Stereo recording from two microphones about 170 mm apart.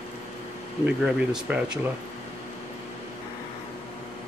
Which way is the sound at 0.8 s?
5° right (ahead or behind).